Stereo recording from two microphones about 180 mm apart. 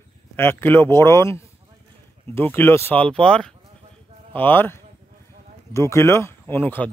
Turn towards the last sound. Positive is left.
turn(degrees=10)  # may be behind; listen again after turning